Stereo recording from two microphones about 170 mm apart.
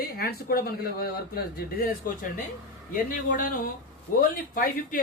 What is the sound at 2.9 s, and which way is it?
Speech, 55° left (ahead or behind).